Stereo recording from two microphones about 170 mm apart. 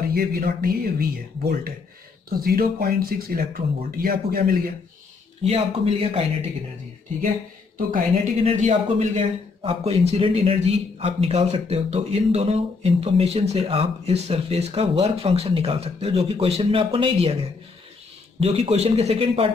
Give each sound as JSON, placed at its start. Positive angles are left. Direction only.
{"t": 0.1, "sound": "speech", "side_deg": -60}
{"t": 5.4, "sound": "a man's voice", "side_deg": -35}
{"t": 8.5, "sound": "a man's voice", "side_deg": -45}